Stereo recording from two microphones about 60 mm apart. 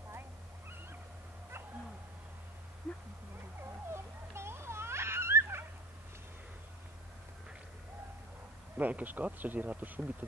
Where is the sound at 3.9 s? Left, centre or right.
Right.